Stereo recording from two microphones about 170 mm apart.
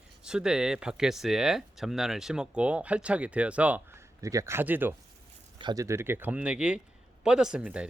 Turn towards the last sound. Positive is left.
turn(degrees=-5)  # may be behind; listen again after turning